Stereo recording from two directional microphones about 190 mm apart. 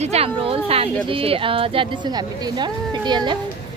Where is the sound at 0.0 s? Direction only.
35° right (ahead or behind).